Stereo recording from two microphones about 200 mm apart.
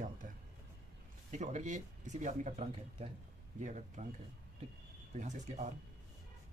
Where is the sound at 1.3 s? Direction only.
35° right (ahead or behind).